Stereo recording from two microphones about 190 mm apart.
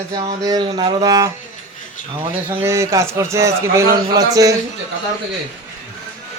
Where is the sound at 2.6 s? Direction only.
15° right (ahead or behind).